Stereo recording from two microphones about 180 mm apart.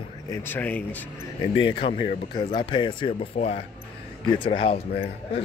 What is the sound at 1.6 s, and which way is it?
Speech, 30° left (ahead or behind).